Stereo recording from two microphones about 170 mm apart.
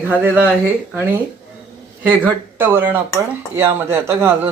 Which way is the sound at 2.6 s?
15° right (ahead or behind).